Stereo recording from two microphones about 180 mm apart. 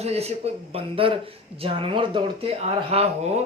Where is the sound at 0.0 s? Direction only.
35° right (ahead or behind).